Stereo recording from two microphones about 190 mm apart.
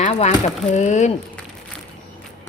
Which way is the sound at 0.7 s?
35° left (ahead or behind).